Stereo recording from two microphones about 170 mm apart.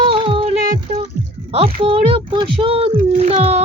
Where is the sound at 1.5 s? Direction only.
35° right (ahead or behind).